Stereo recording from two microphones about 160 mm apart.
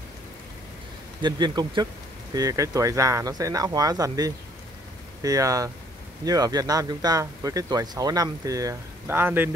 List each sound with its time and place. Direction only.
1.2 s speech: 25° right (ahead or behind)